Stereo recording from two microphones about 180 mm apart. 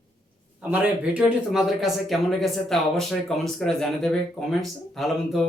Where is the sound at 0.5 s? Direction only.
5° right (ahead or behind).